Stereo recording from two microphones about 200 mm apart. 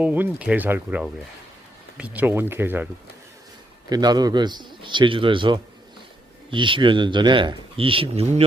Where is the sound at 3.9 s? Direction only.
20° right (ahead or behind).